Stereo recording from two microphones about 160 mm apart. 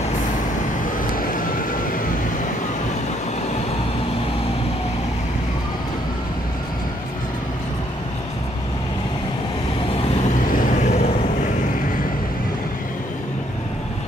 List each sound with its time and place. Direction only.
1.1 s vehicle: 60° left (ahead or behind)
10.5 s vehicle: 55° left (ahead or behind)